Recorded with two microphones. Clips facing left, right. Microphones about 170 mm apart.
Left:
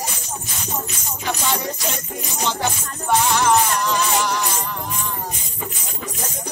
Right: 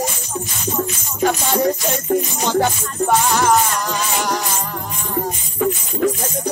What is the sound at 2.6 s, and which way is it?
Music, 50° right (ahead or behind).